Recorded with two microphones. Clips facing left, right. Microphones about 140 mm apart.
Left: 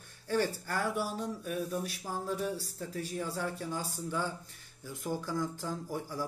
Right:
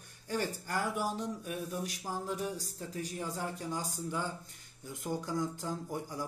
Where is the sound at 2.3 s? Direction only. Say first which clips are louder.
Left 2 dB; 15° right (ahead or behind).